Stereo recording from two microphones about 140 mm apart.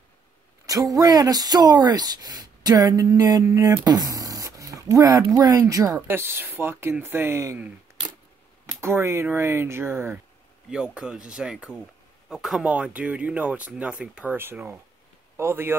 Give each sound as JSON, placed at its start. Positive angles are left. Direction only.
{"t": 0.7, "sound": "speech", "side_deg": -25}
{"t": 8.8, "sound": "speech", "side_deg": -20}
{"t": 10.7, "sound": "a man's voice", "side_deg": -5}